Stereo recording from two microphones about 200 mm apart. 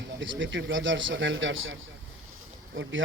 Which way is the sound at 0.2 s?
70° right (ahead or behind).